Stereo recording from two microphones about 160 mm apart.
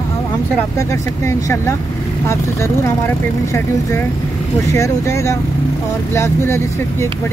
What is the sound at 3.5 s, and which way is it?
Speech, 15° left (ahead or behind).